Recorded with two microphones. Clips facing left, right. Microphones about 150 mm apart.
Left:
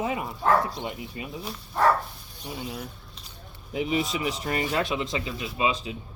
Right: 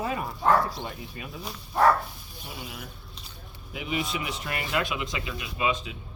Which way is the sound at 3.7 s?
35° left (ahead or behind).